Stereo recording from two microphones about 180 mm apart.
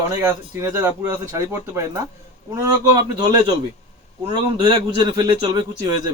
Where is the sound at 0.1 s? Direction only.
15° right (ahead or behind).